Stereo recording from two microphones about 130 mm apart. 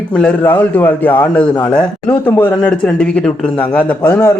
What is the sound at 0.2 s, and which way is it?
Speech, 10° left (ahead or behind).